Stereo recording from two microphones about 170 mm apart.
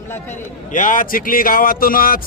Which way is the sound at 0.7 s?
50° left (ahead or behind).